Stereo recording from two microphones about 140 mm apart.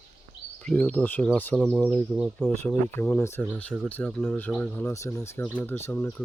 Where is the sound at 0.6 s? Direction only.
10° left (ahead or behind).